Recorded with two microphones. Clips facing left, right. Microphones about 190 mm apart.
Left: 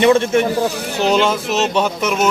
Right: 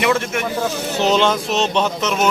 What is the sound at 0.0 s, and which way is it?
Speech, 30° left (ahead or behind).